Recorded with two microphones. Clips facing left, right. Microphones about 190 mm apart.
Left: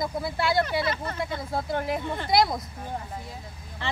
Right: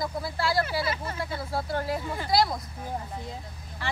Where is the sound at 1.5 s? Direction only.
20° left (ahead or behind).